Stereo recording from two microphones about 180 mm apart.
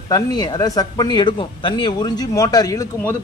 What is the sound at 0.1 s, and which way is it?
Speech, 25° left (ahead or behind).